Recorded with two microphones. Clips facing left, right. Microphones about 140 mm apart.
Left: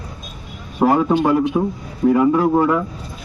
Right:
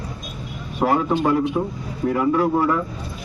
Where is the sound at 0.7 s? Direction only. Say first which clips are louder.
Left 4 dB; 15° left (ahead or behind).